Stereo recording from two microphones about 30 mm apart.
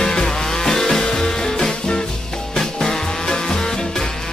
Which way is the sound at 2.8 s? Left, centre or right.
Centre.